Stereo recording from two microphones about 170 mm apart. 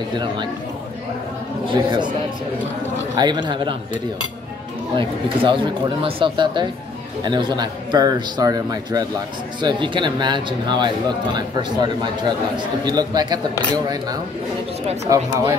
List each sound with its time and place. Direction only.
1.7 s speech: 30° right (ahead or behind)
3.2 s speech: 25° right (ahead or behind)
4.9 s speech: 30° right (ahead or behind)
15.0 s speech: 20° right (ahead or behind)